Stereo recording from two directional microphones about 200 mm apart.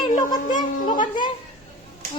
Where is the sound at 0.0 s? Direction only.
20° left (ahead or behind).